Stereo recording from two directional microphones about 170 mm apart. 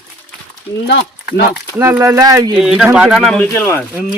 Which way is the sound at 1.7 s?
15° right (ahead or behind).